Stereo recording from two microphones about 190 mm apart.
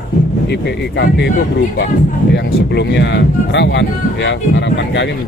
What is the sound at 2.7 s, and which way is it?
Speech, 65° left (ahead or behind).